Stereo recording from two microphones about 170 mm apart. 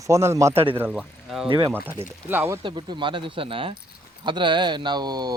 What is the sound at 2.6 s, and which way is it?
Speech, 30° right (ahead or behind).